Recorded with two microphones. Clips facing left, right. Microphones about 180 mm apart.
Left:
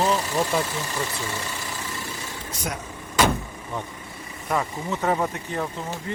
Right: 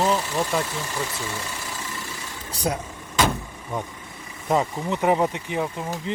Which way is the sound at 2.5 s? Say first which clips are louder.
Right 7 dB; 35° right (ahead or behind).